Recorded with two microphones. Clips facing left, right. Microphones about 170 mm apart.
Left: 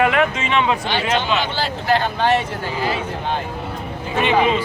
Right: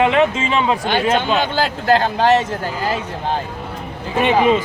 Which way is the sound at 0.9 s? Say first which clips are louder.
Right 3 dB; 50° right (ahead or behind).